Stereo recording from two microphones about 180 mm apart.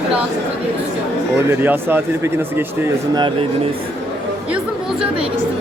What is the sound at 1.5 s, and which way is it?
Speech, 10° right (ahead or behind).